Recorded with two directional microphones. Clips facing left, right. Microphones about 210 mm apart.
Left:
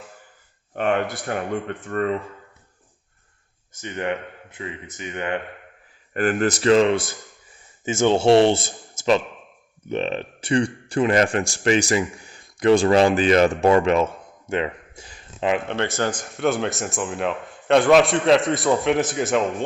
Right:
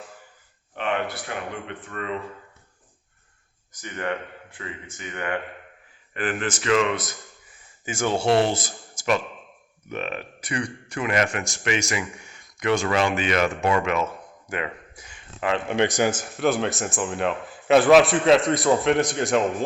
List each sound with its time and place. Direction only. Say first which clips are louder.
0.8 s speech: left 5 dB; 45° left (ahead or behind)
3.7 s speech: left 3 dB; 25° left (ahead or behind)
6.1 s speech: left 6 dB; 40° left (ahead or behind)
15.6 s a man's voice: right 2 dB; 15° right (ahead or behind)